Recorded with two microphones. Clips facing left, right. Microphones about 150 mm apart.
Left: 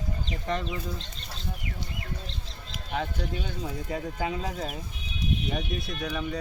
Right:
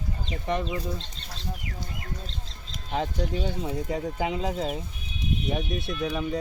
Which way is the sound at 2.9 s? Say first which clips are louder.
Right 3 dB; 35° right (ahead or behind).